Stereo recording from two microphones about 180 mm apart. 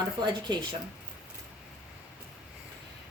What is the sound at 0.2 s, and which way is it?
Speech, 25° right (ahead or behind).